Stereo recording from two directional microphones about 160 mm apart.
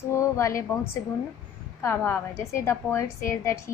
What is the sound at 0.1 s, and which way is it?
Speech, 20° left (ahead or behind).